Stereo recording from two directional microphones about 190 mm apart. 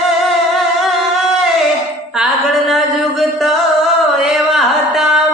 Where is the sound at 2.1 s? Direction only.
Centre (ahead or behind).